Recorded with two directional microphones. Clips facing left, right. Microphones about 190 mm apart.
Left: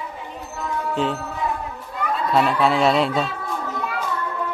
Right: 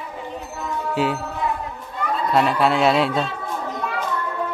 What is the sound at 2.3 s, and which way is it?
Speech, centre (ahead or behind).